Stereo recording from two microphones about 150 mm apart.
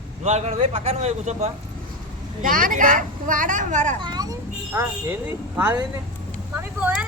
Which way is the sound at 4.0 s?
30° right (ahead or behind).